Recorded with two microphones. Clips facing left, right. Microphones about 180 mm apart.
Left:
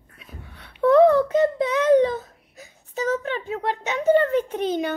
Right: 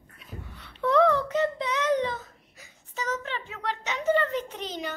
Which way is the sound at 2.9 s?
50° left (ahead or behind).